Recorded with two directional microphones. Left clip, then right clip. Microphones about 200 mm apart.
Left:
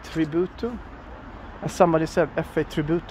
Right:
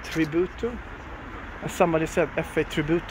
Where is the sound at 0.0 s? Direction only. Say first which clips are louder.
Even; 20° left (ahead or behind).